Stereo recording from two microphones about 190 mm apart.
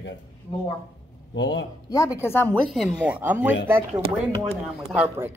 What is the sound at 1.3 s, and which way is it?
Speech, 70° left (ahead or behind).